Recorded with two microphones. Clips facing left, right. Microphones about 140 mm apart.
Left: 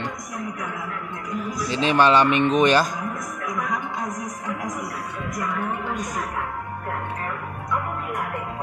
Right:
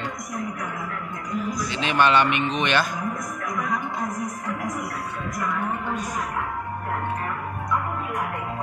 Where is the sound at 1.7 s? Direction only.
35° left (ahead or behind).